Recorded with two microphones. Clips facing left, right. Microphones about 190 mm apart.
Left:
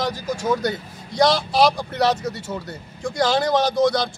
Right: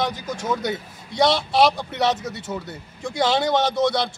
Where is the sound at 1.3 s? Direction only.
25° right (ahead or behind).